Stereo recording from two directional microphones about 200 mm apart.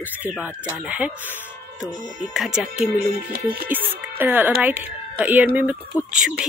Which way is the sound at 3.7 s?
10° right (ahead or behind).